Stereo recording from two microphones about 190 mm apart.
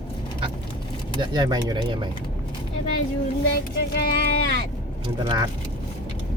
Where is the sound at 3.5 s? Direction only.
55° left (ahead or behind).